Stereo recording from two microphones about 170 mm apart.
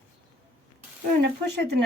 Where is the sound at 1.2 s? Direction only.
80° right.